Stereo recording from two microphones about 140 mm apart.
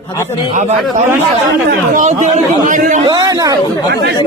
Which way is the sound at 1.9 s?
60° right (ahead or behind).